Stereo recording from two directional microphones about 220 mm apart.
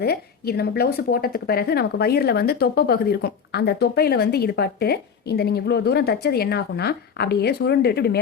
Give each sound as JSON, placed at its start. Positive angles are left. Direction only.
{"t": 0.0, "sound": "speech", "side_deg": 45}